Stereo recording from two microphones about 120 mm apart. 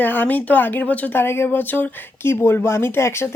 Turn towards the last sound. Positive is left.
turn(degrees=20)  # may be behind; listen again after turning